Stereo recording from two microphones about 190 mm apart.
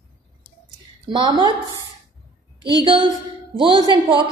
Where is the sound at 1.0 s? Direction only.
20° right (ahead or behind).